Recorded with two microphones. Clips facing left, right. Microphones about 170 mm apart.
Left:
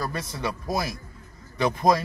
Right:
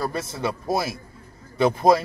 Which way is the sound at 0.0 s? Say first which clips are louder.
Right 3 dB; 25° right (ahead or behind).